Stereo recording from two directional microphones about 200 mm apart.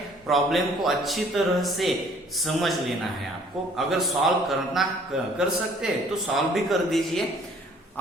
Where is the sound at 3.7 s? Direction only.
Centre (ahead or behind).